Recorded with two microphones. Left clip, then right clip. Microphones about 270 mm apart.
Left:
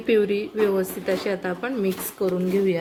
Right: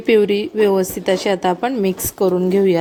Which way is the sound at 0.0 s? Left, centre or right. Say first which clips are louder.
Right 6 dB; right.